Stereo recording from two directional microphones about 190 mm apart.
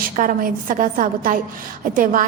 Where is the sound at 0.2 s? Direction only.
45° right (ahead or behind).